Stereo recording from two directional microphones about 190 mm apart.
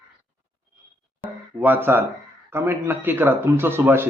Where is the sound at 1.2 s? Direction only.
10° right (ahead or behind).